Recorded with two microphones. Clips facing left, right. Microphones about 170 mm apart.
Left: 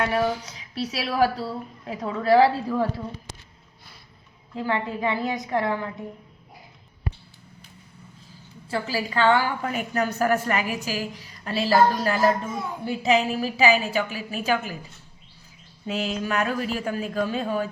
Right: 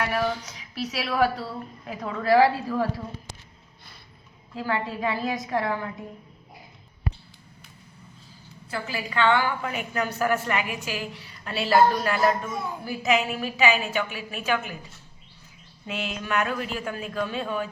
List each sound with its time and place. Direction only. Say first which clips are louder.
0.0 s a woman's voice: left 3 dB; 25° left (ahead or behind)
1.9 s a woman's voice: left 2 dB; 25° left (ahead or behind)
4.5 s a woman's voice: left 2 dB; 20° left (ahead or behind)
8.6 s a woman's voice: left 5 dB; 30° left (ahead or behind)
15.9 s a woman's voice: left 3 dB; 35° left (ahead or behind)